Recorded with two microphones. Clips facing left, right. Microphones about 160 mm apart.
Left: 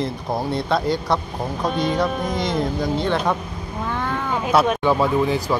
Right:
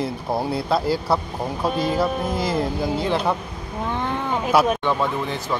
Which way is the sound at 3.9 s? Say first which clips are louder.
Even; 20° right (ahead or behind).